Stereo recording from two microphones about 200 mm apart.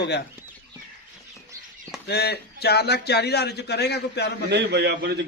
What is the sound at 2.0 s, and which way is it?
A man's voice, 55° left (ahead or behind).